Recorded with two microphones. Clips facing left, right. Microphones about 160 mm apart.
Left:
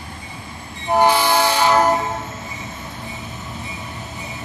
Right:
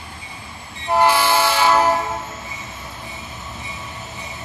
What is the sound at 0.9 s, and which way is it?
Train, 15° left (ahead or behind).